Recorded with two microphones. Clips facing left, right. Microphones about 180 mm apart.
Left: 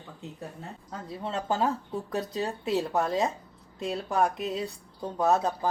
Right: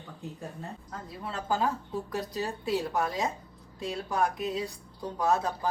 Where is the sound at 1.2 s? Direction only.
25° left (ahead or behind).